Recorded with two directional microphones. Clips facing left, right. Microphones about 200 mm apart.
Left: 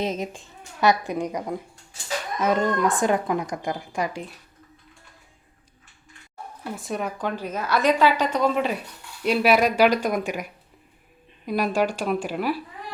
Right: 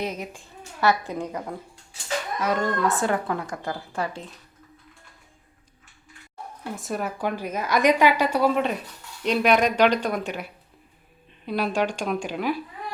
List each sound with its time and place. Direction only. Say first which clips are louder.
0.0 s speech: left 3 dB; 25° left (ahead or behind)
6.7 s a woman's voice: even; centre (ahead or behind)